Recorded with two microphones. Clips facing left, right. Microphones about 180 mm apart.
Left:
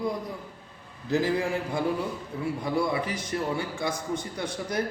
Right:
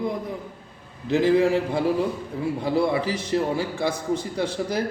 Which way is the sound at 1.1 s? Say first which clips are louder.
Right 7 dB; 25° right (ahead or behind).